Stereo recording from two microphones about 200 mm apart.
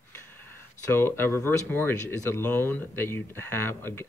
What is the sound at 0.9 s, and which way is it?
Speech, 10° left (ahead or behind).